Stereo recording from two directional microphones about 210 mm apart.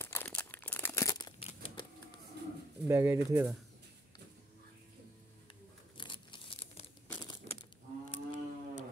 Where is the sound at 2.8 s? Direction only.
15° right (ahead or behind).